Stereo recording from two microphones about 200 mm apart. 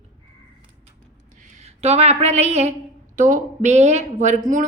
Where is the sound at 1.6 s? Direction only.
35° right (ahead or behind).